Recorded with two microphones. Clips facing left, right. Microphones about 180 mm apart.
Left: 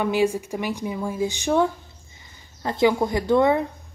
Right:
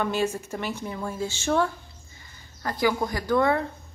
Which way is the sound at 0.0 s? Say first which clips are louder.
Left 5 dB; 10° left (ahead or behind).